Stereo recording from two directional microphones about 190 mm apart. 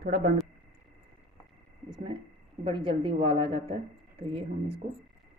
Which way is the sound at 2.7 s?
25° right (ahead or behind).